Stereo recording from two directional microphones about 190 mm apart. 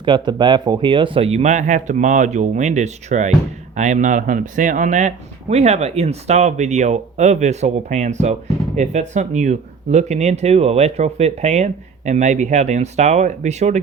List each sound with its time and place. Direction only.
0.0 s speech: 25° right (ahead or behind)